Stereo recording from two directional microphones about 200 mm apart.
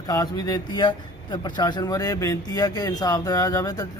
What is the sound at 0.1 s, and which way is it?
A man's voice, 20° left (ahead or behind).